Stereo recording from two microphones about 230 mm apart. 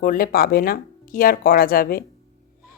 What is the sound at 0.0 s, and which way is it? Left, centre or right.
A woman's voice, left.